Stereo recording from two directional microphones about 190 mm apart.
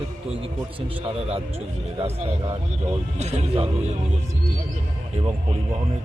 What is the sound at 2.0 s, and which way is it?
Speech, 35° right (ahead or behind).